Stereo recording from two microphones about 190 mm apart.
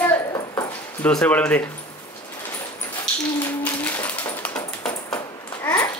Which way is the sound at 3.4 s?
10° left (ahead or behind).